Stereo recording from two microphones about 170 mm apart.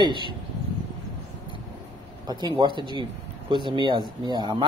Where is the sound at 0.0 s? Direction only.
25° right (ahead or behind).